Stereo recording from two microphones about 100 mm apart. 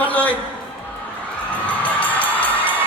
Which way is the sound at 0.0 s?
15° left (ahead or behind).